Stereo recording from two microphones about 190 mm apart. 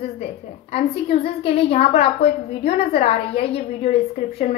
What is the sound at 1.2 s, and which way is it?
A woman's voice, 30° left (ahead or behind).